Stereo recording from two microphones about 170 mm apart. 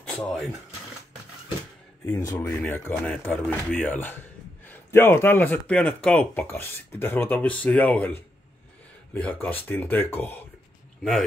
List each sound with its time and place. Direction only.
0.0 s speech: centre (ahead or behind)
2.1 s a man's voice: 20° left (ahead or behind)